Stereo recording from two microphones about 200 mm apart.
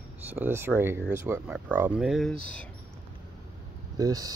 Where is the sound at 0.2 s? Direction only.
10° right (ahead or behind).